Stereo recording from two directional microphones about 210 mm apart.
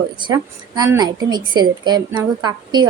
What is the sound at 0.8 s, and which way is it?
A woman's voice, 20° right (ahead or behind).